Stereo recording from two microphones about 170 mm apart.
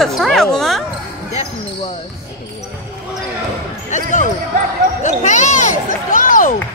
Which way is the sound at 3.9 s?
45° left (ahead or behind).